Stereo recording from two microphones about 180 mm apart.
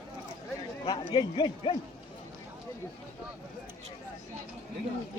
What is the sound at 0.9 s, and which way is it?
Speech, 25° left (ahead or behind).